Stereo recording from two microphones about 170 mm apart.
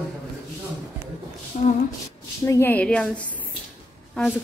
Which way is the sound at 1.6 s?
40° left (ahead or behind).